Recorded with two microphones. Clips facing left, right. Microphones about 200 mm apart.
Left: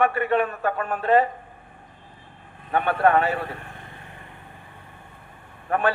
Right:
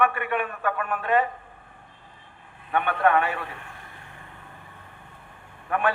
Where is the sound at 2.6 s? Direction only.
40° left (ahead or behind).